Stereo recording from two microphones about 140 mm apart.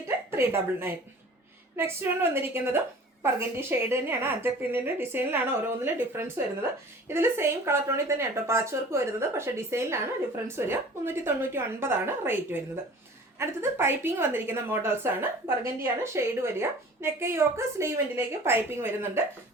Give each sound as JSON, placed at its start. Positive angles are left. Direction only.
{"t": 0.3, "sound": "a woman's voice", "side_deg": -15}